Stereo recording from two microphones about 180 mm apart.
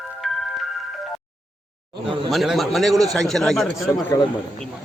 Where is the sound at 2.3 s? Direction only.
Centre (ahead or behind).